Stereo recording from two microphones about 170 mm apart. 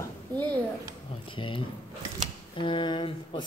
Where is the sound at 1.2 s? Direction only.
30° left (ahead or behind).